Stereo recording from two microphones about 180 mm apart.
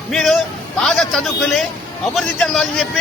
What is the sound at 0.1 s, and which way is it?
A man's voice, centre (ahead or behind).